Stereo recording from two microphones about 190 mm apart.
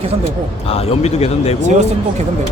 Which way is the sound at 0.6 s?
30° left (ahead or behind).